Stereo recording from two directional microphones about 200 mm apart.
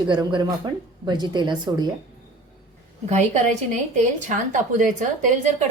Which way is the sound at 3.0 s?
35° right (ahead or behind).